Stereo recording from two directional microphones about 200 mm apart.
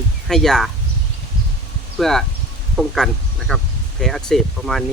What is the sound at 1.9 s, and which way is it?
Speech, centre (ahead or behind).